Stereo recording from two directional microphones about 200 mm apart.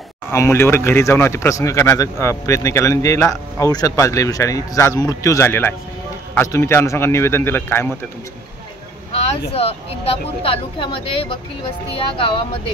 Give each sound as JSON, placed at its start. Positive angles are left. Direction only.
{"t": 0.3, "sound": "speech", "side_deg": 15}
{"t": 9.3, "sound": "a woman's voice", "side_deg": 30}